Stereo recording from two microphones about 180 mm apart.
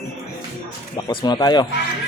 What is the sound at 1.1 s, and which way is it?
Speech, 25° left (ahead or behind).